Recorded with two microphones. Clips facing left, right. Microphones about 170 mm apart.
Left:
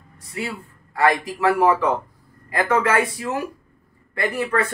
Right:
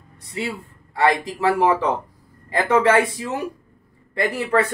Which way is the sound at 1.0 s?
30° right (ahead or behind).